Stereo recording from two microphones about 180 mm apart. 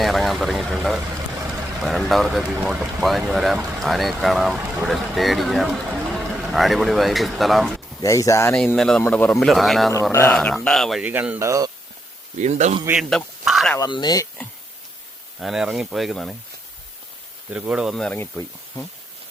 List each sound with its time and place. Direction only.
0.0 s speech: centre (ahead or behind)
8.0 s speech: 20° left (ahead or behind)
8.5 s speech: 5° left (ahead or behind)
9.9 s speech: 15° left (ahead or behind); by 11.7 s 15° right (ahead or behind)
12.4 s a man's voice: 40° right (ahead or behind)
13.0 s a sound: centre (ahead or behind)
13.7 s speech: 25° left (ahead or behind)
15.4 s speech: centre (ahead or behind)
17.5 s speech: 5° right (ahead or behind); by 18.9 s 10° left (ahead or behind)